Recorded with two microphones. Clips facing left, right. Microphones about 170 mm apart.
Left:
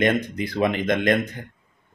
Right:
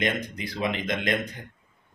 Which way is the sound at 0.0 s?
50° left (ahead or behind).